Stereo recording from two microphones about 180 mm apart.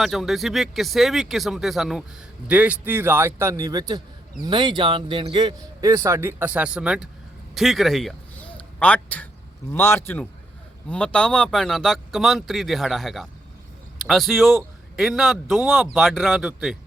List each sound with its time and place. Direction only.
0.0 s a man's voice: centre (ahead or behind)